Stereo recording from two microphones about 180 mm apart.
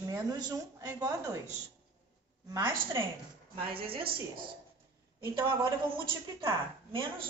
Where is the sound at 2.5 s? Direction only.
25° right (ahead or behind).